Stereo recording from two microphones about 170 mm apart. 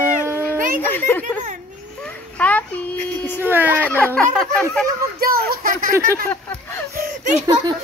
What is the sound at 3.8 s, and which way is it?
A child's voice, 10° left (ahead or behind).